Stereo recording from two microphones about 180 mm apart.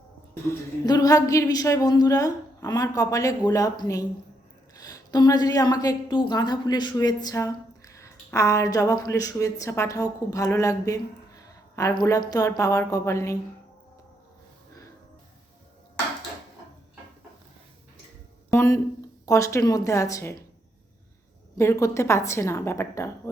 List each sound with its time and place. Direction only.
0.5 s a woman's voice: 20° left (ahead or behind)
18.5 s a sound: 15° left (ahead or behind)
19.2 s a woman's voice: 15° left (ahead or behind)
21.6 s a woman's voice: 15° left (ahead or behind)